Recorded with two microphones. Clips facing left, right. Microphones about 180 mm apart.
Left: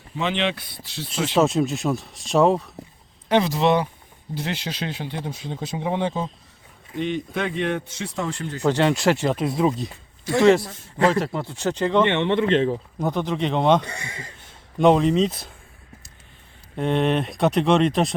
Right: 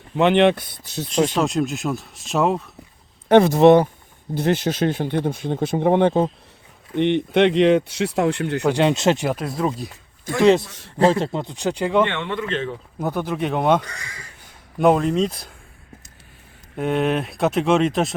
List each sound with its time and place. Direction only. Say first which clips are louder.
0.2 s speech: right 9 dB; 60° right (ahead or behind)
1.4 s speech: left 2 dB; centre (ahead or behind)
3.2 s speech: right 7 dB; 50° right (ahead or behind)
6.9 s speech: right 8 dB; 65° right (ahead or behind)
8.6 s speech: right 1 dB; 15° right (ahead or behind)
9.2 s speech: left 2 dB; centre (ahead or behind)
10.3 s speech: left 2 dB; 50° right (ahead or behind)
10.7 s a man's voice: left 3 dB; 80° right
10.9 s speech: right 3 dB; 30° right (ahead or behind); by 12.0 s 10° right (ahead or behind)
12.0 s speech: left 6 dB; 25° left (ahead or behind)
13.0 s speech: right 2 dB; 5° right (ahead or behind)
13.8 s speech: left 4 dB; 25° left (ahead or behind)
14.8 s speech: even; 5° right (ahead or behind)
16.7 s speech: even; 5° right (ahead or behind)